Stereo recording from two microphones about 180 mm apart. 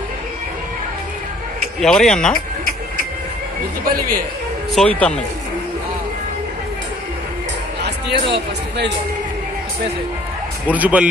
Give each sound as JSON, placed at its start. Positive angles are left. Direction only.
{"t": 1.8, "sound": "speech", "side_deg": 5}
{"t": 4.7, "sound": "speech", "side_deg": 5}
{"t": 7.8, "sound": "speech", "side_deg": -65}
{"t": 10.7, "sound": "speech", "side_deg": -10}